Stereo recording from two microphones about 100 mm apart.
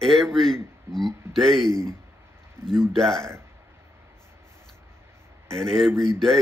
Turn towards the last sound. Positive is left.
turn(degrees=5)  # may be behind; listen again after turning